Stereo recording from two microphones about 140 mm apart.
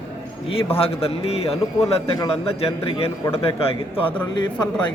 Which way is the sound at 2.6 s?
45° left (ahead or behind).